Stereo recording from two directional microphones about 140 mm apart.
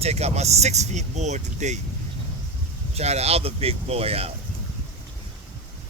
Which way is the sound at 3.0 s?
50° right (ahead or behind).